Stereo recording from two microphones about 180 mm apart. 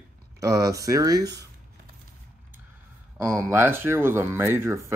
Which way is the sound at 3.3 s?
15° right (ahead or behind).